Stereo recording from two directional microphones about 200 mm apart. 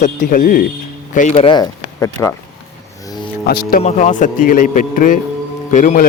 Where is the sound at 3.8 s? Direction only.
35° left (ahead or behind).